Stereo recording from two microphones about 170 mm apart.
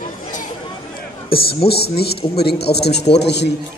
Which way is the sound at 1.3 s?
30° left (ahead or behind).